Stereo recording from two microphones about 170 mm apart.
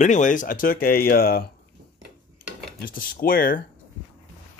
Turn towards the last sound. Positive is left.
turn(degrees=55)  # may be behind; listen again after turning